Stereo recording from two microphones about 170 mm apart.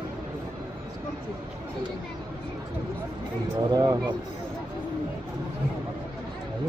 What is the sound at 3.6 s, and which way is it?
Speech, 25° right (ahead or behind).